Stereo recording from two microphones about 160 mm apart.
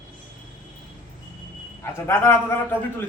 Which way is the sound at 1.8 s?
15° left (ahead or behind).